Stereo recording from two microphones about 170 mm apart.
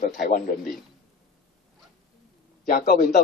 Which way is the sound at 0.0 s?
50° left (ahead or behind).